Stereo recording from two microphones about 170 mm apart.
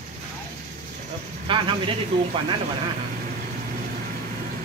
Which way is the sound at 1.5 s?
30° right (ahead or behind).